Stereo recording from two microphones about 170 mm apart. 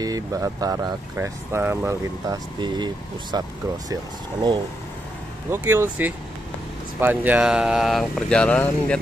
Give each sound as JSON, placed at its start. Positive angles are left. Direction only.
{"t": 0.0, "sound": "speech", "side_deg": -20}